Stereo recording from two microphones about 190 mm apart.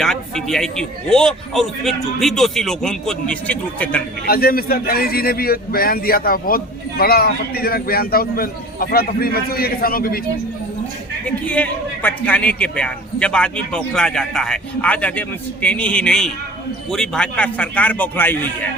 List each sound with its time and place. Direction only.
0.0 s a man's voice: centre (ahead or behind)
4.3 s a man's voice: 50° left (ahead or behind)
11.3 s a man's voice: 5° left (ahead or behind)